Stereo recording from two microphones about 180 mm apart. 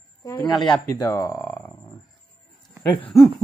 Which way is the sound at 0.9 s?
20° left (ahead or behind).